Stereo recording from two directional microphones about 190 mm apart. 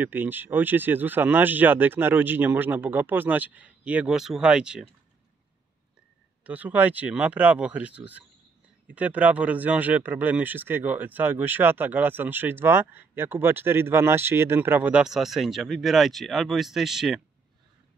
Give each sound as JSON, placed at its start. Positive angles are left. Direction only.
{"t": 0.0, "sound": "speech", "side_deg": -10}
{"t": 6.4, "sound": "speech", "side_deg": -10}